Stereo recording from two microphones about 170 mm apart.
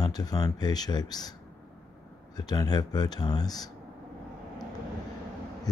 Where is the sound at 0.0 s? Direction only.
20° left (ahead or behind).